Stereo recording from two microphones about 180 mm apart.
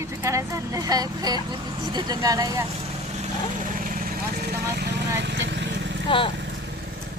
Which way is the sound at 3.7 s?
50° right (ahead or behind).